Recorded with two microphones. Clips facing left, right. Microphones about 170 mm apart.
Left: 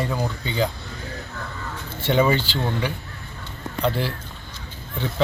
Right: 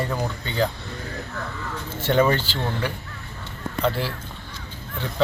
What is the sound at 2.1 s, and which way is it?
Speech, 5° left (ahead or behind).